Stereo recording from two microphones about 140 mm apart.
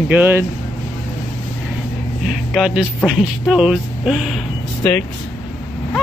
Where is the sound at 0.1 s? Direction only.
15° right (ahead or behind).